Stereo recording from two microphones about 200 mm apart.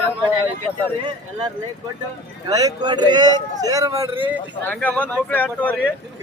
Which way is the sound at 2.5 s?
20° right (ahead or behind).